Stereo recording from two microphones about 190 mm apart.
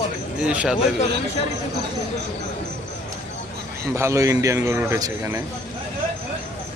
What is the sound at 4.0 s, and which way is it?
Speech, 15° right (ahead or behind).